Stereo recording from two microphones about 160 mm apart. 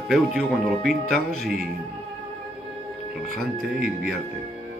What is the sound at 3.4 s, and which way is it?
Speech, centre (ahead or behind).